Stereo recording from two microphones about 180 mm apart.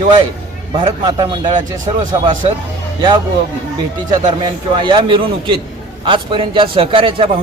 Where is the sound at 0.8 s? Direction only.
25° right (ahead or behind).